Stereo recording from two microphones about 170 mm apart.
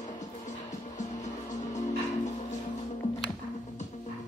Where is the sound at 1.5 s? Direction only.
45° left (ahead or behind).